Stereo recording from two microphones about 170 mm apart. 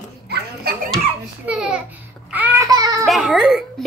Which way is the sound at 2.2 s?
10° right (ahead or behind).